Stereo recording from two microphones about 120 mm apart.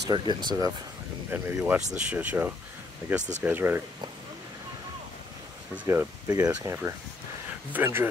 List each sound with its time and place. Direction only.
0.1 s speech: 40° right (ahead or behind)
1.3 s speech: 15° right (ahead or behind)
3.2 s speech: 80° right
3.4 s speech: 15° right (ahead or behind)
5.9 s speech: 20° right (ahead or behind)
6.3 s speech: 35° right (ahead or behind)
6.7 s speech: 20° right (ahead or behind)